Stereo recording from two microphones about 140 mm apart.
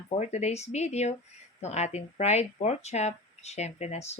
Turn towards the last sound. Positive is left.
turn(degrees=50)  # may be behind; listen again after turning